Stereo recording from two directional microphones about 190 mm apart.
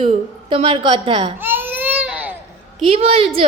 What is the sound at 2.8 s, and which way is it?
Speech, 30° right (ahead or behind).